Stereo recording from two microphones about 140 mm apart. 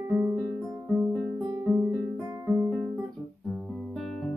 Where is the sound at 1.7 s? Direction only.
20° right (ahead or behind).